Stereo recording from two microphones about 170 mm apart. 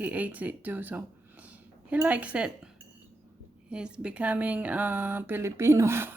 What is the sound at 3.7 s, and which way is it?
Speech, 5° right (ahead or behind).